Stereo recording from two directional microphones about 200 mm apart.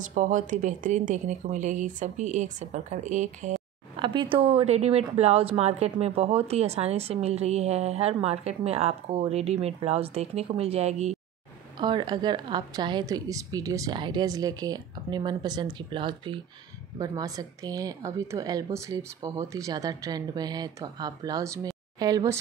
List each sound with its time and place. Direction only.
0.1 s a woman's voice: 40° right (ahead or behind)
4.0 s a woman's voice: 25° right (ahead or behind)
11.8 s a woman's voice: 20° right (ahead or behind)